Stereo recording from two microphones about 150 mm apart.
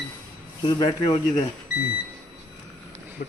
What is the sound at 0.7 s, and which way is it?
Speech, 25° left (ahead or behind).